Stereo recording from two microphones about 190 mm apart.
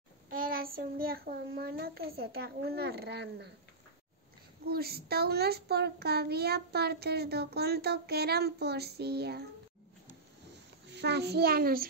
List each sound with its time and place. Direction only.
0.4 s child singing: 50° right (ahead or behind)
4.6 s a child's voice: 55° right (ahead or behind)
10.9 s a child's voice: 60° right (ahead or behind)